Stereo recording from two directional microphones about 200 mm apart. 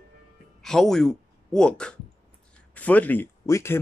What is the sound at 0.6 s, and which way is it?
Speech, centre (ahead or behind).